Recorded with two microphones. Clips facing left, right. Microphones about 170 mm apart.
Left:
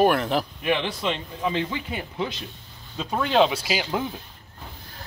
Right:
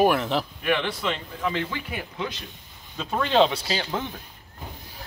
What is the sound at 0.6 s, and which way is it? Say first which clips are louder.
Speech: left 1 dB; 20° left (ahead or behind).